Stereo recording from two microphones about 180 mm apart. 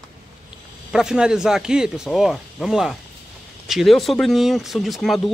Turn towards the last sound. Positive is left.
turn(degrees=0)  # may be behind; listen again after turning